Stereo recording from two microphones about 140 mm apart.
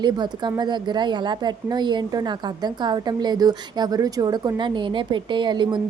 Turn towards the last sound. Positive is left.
turn(degrees=-35)  # may be behind; listen again after turning